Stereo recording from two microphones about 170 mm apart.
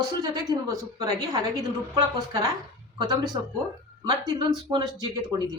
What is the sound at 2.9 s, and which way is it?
Speech, 25° right (ahead or behind).